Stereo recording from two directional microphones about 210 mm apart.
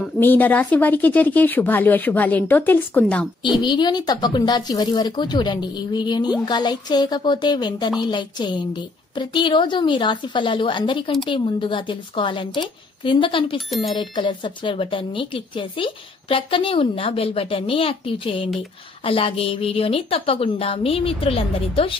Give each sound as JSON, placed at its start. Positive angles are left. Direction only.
{"t": 0.0, "sound": "speech", "side_deg": 10}
{"t": 3.6, "sound": "speech", "side_deg": 20}
{"t": 13.7, "sound": "speech", "side_deg": 0}
{"t": 13.9, "sound": "speech", "side_deg": 20}